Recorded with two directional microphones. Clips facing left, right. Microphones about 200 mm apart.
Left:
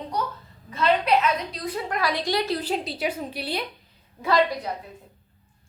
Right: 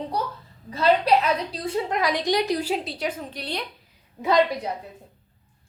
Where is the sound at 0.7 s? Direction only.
35° right (ahead or behind); by 2.9 s 10° right (ahead or behind).